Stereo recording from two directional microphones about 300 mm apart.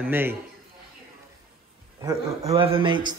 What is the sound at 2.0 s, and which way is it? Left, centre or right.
A man's voice, centre.